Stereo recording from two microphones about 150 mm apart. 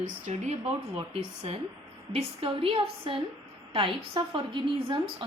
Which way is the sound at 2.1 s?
35° right (ahead or behind).